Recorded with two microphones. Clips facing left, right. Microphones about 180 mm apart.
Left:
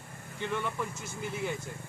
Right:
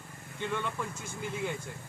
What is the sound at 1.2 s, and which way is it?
Speech, 5° left (ahead or behind).